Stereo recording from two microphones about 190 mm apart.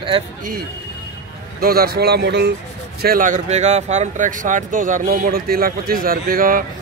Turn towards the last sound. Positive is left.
turn(degrees=-50)  # may be behind; listen again after turning